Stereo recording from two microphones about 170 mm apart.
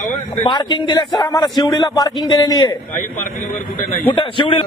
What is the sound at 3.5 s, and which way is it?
Speech, 55° left (ahead or behind).